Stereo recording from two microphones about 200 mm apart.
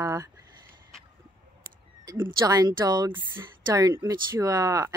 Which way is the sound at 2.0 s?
20° right (ahead or behind).